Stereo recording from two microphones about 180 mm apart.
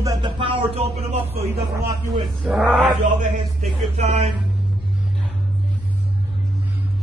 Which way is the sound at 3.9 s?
40° right (ahead or behind).